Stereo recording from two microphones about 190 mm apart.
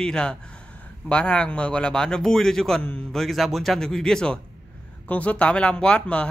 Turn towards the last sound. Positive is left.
turn(degrees=5)  # may be behind; listen again after turning